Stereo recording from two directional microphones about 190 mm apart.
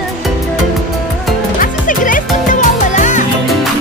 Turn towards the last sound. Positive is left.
turn(degrees=40)  # may be behind; listen again after turning